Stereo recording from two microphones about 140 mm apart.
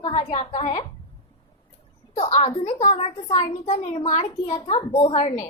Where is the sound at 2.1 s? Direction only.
55° left (ahead or behind).